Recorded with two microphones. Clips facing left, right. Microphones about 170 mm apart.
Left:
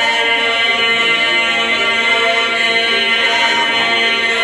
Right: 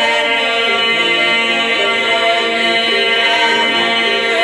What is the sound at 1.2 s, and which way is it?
Mantra, 65° right (ahead or behind).